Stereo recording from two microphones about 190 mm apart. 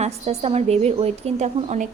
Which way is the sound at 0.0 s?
35° right (ahead or behind).